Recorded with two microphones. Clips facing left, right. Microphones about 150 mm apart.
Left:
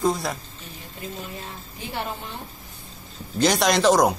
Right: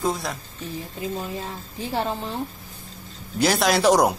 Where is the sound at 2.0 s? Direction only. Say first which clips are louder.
Right 5 dB; 35° right (ahead or behind).